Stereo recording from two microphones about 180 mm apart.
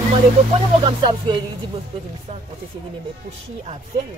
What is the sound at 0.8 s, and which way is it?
Speech, 25° right (ahead or behind).